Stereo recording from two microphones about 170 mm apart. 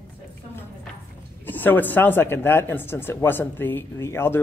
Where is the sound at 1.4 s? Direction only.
10° left (ahead or behind).